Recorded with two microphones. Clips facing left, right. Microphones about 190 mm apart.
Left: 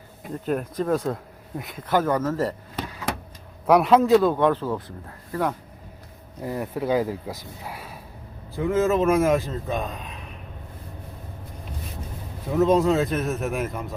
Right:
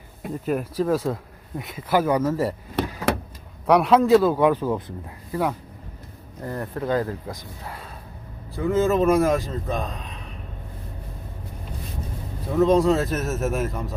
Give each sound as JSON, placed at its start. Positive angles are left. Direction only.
{"t": 0.4, "sound": "speech", "side_deg": -5}
{"t": 3.1, "sound": "vehicle", "side_deg": -65}
{"t": 3.7, "sound": "speech", "side_deg": 0}
{"t": 6.4, "sound": "speech", "side_deg": 5}
{"t": 12.5, "sound": "speech", "side_deg": 0}